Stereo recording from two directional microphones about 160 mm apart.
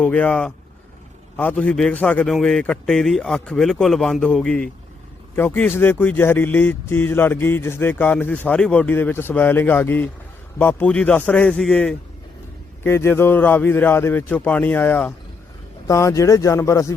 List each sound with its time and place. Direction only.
0.0 s a man's voice: 10° left (ahead or behind)